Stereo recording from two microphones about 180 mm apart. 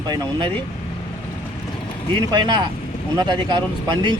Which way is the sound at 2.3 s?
25° right (ahead or behind).